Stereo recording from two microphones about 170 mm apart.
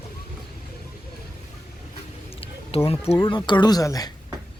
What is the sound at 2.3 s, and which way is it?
Speech, 35° left (ahead or behind).